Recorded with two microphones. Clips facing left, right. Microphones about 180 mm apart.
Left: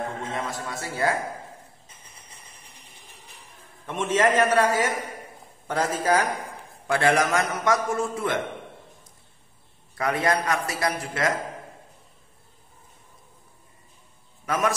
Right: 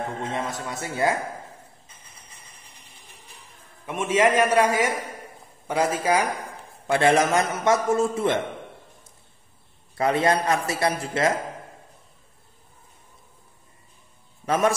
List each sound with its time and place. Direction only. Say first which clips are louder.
0.3 s a man's voice: right 2 dB; 20° right (ahead or behind)
3.8 s a man's voice: right 2 dB; 10° right (ahead or behind)
6.9 s a man's voice: right 2 dB; 25° right (ahead or behind)
9.9 s a man's voice: right 3 dB; 25° right (ahead or behind)
14.4 s a man's voice: right 3 dB; 30° right (ahead or behind)